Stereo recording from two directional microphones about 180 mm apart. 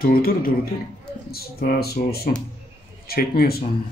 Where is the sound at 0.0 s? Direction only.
55° left (ahead or behind).